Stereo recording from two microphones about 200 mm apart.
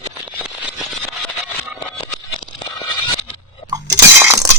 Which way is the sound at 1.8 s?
20° left (ahead or behind).